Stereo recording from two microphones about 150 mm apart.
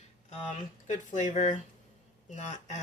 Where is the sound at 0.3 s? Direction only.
55° left (ahead or behind).